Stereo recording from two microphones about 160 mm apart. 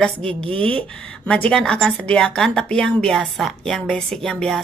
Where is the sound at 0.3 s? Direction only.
35° right (ahead or behind).